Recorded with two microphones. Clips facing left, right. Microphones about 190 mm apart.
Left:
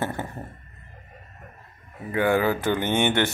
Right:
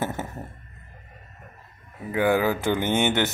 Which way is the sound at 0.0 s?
5° right (ahead or behind).